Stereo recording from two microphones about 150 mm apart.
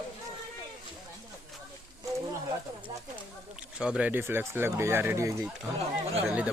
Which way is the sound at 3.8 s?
5° right (ahead or behind).